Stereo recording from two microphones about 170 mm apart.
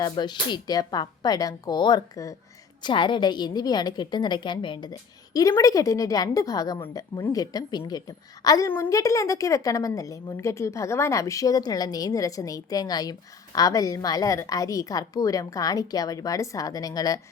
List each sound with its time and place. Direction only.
0.0 s a woman's voice: 25° left (ahead or behind)